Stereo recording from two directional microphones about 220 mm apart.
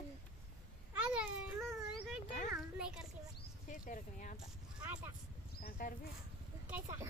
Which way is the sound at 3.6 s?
35° left (ahead or behind).